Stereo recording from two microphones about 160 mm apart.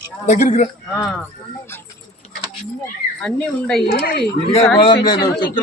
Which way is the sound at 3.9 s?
70° left (ahead or behind).